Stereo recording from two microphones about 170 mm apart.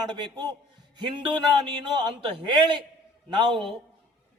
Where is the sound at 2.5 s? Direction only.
25° right (ahead or behind).